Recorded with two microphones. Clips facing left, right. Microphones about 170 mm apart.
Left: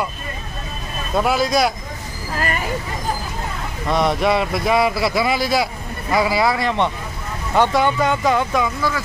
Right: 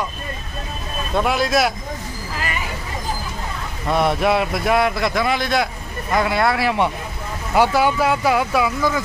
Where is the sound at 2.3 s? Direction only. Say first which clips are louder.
Left 4 dB; 45° left (ahead or behind).